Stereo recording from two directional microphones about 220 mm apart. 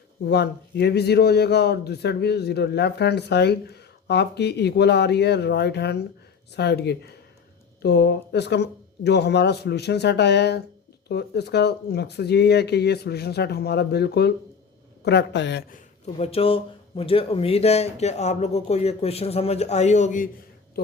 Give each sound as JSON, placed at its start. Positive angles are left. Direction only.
{"t": 0.3, "sound": "a man's voice", "side_deg": 50}
{"t": 16.1, "sound": "speech", "side_deg": 25}